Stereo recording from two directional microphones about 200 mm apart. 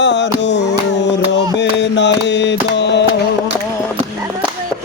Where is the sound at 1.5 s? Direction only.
60° left (ahead or behind).